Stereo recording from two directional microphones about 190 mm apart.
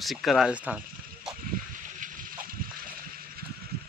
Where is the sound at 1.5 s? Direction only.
45° right (ahead or behind).